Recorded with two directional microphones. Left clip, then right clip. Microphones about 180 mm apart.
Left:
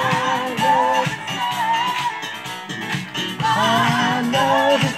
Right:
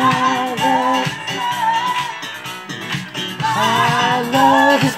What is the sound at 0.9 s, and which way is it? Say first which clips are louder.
Music: right 1 dB; 20° right (ahead or behind).